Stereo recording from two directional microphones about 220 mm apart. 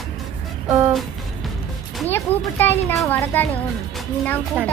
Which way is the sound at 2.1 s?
10° left (ahead or behind).